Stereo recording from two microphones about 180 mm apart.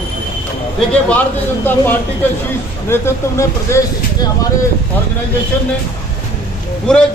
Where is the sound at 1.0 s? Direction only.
10° left (ahead or behind).